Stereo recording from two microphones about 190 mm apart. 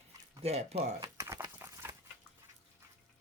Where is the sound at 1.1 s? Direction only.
15° right (ahead or behind).